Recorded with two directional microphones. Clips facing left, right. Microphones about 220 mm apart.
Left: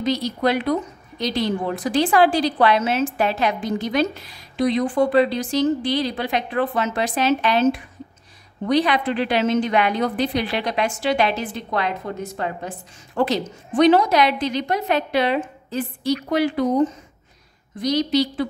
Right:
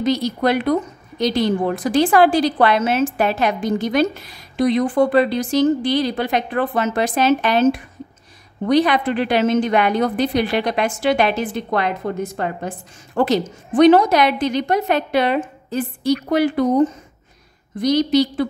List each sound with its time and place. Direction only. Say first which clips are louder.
0.0 s a woman's voice: right 3 dB; 50° right (ahead or behind)